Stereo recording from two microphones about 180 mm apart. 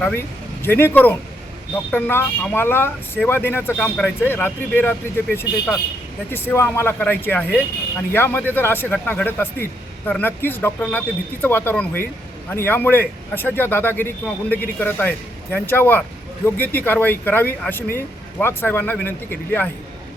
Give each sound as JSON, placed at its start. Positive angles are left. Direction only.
{"t": 0.6, "sound": "speech", "side_deg": 10}